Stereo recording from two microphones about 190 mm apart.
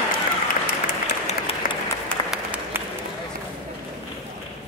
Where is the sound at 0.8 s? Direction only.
35° left (ahead or behind).